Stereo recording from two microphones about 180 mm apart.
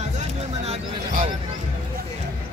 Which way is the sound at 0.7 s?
35° right (ahead or behind).